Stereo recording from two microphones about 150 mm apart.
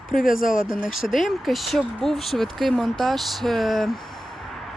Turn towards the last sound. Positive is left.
turn(degrees=0)  # may be behind; listen again after turning